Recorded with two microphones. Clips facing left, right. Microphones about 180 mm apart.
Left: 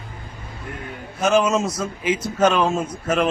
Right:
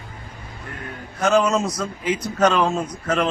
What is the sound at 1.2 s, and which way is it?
Speech, 5° left (ahead or behind).